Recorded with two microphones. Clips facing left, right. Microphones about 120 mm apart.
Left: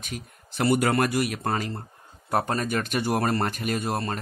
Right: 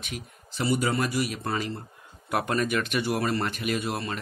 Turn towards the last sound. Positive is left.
turn(degrees=45)  # may be behind; listen again after turning